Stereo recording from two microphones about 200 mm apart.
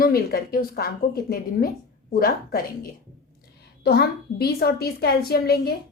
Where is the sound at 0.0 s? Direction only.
50° left (ahead or behind).